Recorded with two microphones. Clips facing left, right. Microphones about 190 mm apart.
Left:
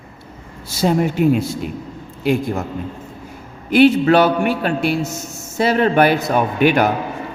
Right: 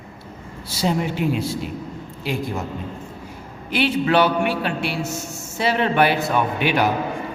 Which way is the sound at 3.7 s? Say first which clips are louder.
Left 7 dB; 45° left (ahead or behind).